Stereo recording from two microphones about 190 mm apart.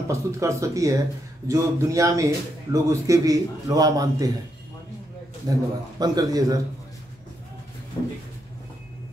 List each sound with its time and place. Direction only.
0.1 s a man's voice: 15° right (ahead or behind)
5.5 s a man's voice: 20° right (ahead or behind)